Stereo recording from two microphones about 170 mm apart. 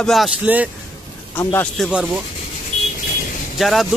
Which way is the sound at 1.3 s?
10° left (ahead or behind).